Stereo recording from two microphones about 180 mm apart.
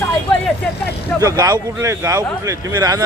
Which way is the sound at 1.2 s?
20° right (ahead or behind).